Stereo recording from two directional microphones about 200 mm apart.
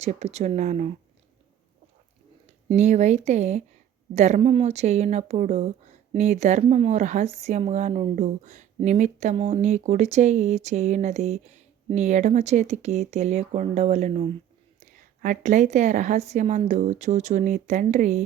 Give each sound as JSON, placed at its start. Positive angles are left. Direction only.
{"t": 0.0, "sound": "speech", "side_deg": -35}
{"t": 2.6, "sound": "speech", "side_deg": -35}
{"t": 14.8, "sound": "speech", "side_deg": -40}